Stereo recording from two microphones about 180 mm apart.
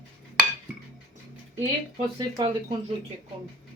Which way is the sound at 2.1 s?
25° right (ahead or behind).